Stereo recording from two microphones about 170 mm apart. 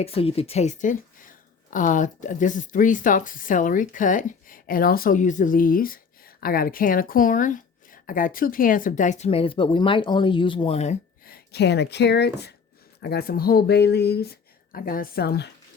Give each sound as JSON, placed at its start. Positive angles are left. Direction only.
{"t": 0.0, "sound": "speech", "side_deg": 35}
{"t": 11.3, "sound": "speech", "side_deg": 70}